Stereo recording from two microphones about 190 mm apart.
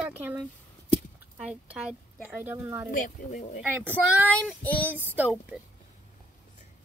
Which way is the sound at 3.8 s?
10° right (ahead or behind).